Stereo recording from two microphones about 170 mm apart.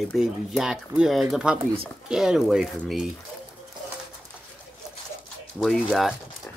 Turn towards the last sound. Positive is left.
turn(degrees=0)  # may be behind; listen again after turning